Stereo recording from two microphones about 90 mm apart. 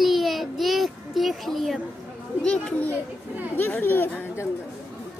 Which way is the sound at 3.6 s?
20° left (ahead or behind).